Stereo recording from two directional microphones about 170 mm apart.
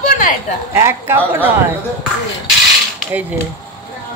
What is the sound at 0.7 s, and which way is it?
Speech, 15° right (ahead or behind).